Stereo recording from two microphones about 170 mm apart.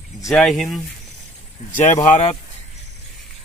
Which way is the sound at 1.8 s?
45° left (ahead or behind).